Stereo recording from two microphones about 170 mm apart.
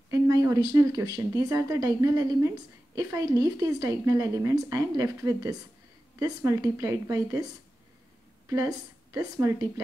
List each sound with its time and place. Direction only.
0.1 s a sound: 20° right (ahead or behind)
0.7 s a woman's voice: 20° right (ahead or behind)
8.5 s a woman's voice: 20° right (ahead or behind)